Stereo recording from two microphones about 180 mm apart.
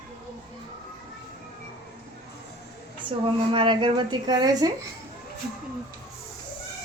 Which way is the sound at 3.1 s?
30° right (ahead or behind).